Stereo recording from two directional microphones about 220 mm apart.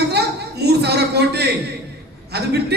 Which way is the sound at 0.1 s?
50° right (ahead or behind).